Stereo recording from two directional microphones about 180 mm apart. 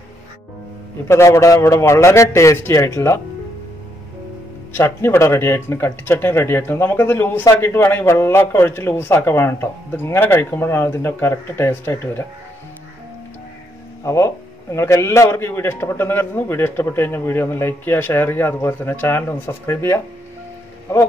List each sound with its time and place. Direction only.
1.0 s speech: 15° left (ahead or behind)
4.7 s speech: 15° left (ahead or behind)
14.0 s speech: 15° left (ahead or behind)